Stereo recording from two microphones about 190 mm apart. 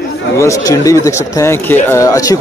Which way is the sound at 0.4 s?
15° left (ahead or behind).